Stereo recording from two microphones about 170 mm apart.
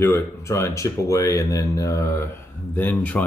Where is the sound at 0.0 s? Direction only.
15° left (ahead or behind).